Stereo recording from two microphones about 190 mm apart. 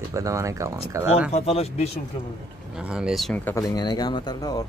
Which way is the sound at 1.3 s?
35° left (ahead or behind).